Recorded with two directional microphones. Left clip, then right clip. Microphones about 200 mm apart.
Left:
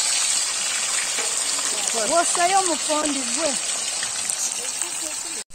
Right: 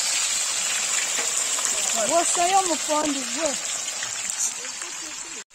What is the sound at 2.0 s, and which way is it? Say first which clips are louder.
Speech: left 2 dB; 15° right (ahead or behind).